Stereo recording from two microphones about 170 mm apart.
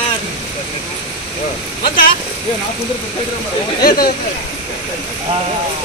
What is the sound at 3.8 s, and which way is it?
Speech, 60° left (ahead or behind).